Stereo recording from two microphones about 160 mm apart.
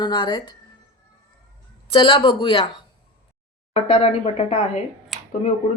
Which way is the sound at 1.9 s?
30° left (ahead or behind).